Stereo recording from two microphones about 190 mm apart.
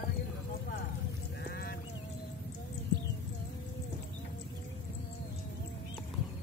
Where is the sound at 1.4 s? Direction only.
55° left (ahead or behind).